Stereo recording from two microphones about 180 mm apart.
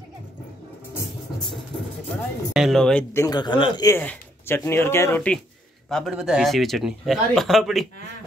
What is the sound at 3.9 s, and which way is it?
Speech, 15° left (ahead or behind).